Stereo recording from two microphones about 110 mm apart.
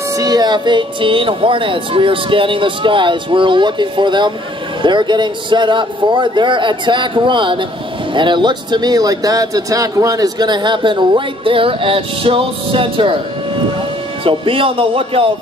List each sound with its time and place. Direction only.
0.2 s speech: 40° right (ahead or behind)
14.2 s speech: 55° right (ahead or behind)